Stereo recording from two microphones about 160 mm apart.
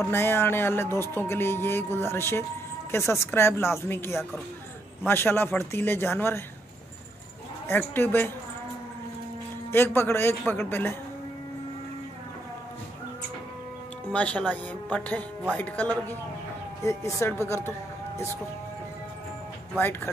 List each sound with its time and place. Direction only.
0.0 s a man's voice: 15° left (ahead or behind)
7.6 s a man's voice: 15° left (ahead or behind)
9.7 s a man's voice: 15° left (ahead or behind)
14.1 s a man's voice: 10° left (ahead or behind)
19.8 s a man's voice: 15° left (ahead or behind)